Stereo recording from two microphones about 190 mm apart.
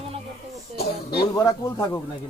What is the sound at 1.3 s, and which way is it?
Speech, 20° left (ahead or behind).